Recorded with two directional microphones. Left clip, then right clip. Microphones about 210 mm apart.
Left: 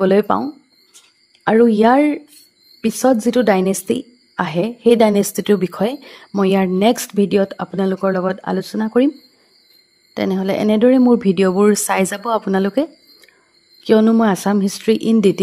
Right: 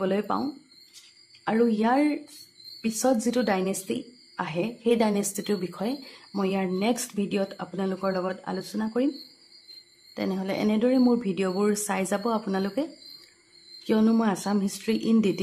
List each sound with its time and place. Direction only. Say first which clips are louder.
0.0 s a woman's voice: left 12 dB; 40° left (ahead or behind)
1.4 s a woman's voice: left 12 dB; 40° left (ahead or behind)
10.1 s a woman's voice: left 11 dB; 40° left (ahead or behind)
13.8 s a woman's voice: left 11 dB; 30° left (ahead or behind)